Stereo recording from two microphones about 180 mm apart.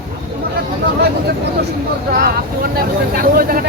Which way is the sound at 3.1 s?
55° right (ahead or behind).